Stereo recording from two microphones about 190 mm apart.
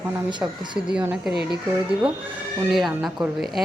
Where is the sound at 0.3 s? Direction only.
25° right (ahead or behind).